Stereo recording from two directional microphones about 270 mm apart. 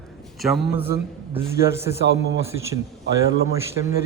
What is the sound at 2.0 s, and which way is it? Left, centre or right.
Speech, right.